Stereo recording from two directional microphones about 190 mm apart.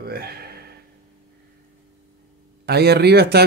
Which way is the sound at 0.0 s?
55° right (ahead or behind).